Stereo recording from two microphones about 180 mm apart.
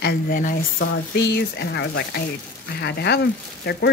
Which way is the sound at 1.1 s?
70° left (ahead or behind).